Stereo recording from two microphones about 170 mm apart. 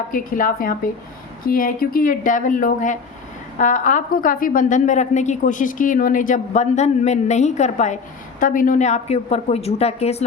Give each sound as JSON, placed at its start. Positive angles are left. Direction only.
{"t": 0.1, "sound": "a woman's voice", "side_deg": 55}